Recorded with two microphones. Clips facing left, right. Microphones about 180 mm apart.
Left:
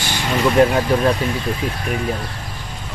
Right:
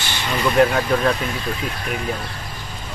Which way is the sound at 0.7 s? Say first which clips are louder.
Left 2 dB; 25° left (ahead or behind).